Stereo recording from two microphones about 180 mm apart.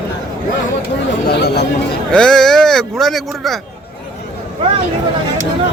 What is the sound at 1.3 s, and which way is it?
Speech, 65° left (ahead or behind).